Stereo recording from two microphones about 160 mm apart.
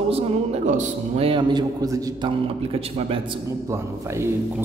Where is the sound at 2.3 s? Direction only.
35° right (ahead or behind).